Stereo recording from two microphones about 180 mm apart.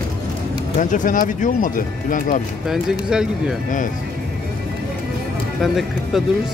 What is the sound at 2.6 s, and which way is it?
Speech, centre (ahead or behind).